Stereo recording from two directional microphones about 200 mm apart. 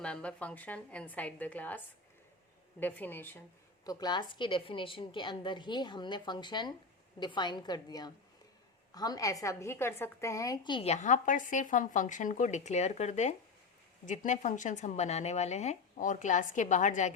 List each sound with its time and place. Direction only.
0.0 s a woman's voice: 5° left (ahead or behind)
2.8 s a woman's voice: 10° left (ahead or behind)
3.8 s a woman's voice: 20° left (ahead or behind); by 17.1 s 40° left (ahead or behind)